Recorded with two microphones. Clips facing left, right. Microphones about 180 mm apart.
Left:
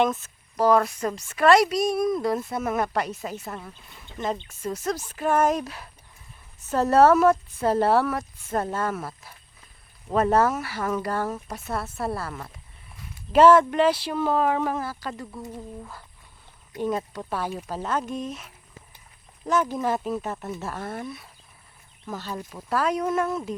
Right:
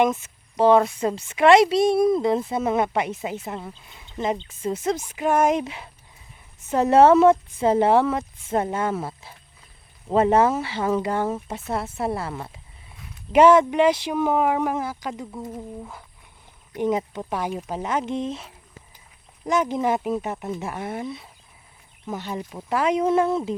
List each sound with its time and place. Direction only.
0.0 s speech: 15° right (ahead or behind)
0.5 s a woman's voice: 25° right (ahead or behind)
19.5 s a woman's voice: 15° right (ahead or behind)